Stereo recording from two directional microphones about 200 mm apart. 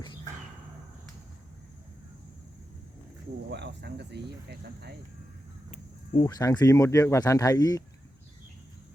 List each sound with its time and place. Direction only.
3.5 s speech: 60° right (ahead or behind)
6.1 s speech: 20° left (ahead or behind)